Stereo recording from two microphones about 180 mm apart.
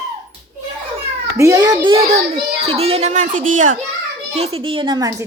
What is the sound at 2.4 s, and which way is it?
A child's voice, 35° right (ahead or behind).